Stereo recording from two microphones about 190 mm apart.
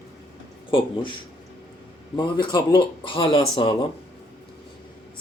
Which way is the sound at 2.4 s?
25° left (ahead or behind).